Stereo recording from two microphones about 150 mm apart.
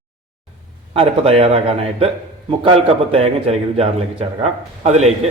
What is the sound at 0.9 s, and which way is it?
Speech, 40° right (ahead or behind).